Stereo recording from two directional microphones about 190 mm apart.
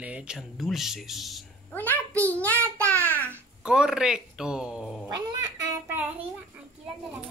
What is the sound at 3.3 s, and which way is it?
A child's voice, 5° right (ahead or behind).